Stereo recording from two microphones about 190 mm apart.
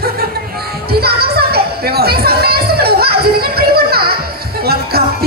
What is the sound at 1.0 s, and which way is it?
Music, 55° right (ahead or behind).